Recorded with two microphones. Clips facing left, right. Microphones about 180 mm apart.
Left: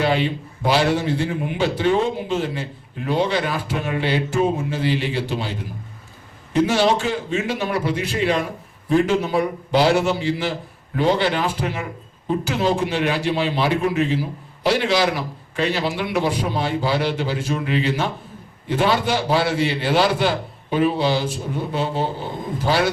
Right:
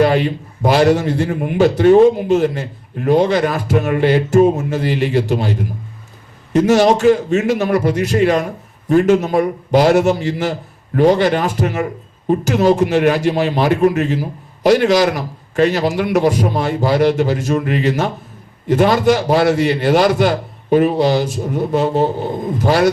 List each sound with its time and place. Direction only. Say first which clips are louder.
0.0 s a man's voice: right 6 dB; 45° right (ahead or behind)